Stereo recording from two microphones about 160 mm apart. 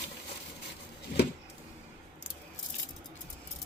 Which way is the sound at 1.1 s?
80° left.